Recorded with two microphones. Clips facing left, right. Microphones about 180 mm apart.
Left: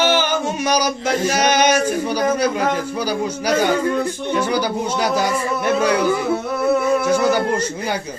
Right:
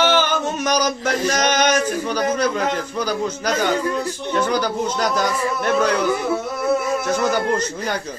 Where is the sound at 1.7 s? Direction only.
40° left (ahead or behind).